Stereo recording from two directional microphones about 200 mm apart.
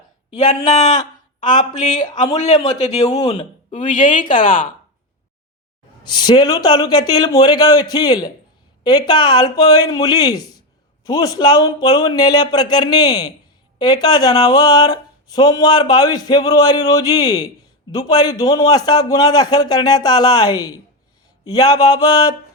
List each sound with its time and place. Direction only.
0.4 s a man's voice: 35° left (ahead or behind)
6.1 s speech: 20° left (ahead or behind)